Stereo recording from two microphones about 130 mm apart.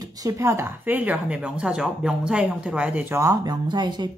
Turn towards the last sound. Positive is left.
turn(degrees=-35)  # may be behind; listen again after turning